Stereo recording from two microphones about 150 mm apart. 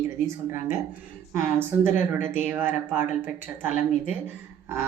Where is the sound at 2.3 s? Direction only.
15° right (ahead or behind).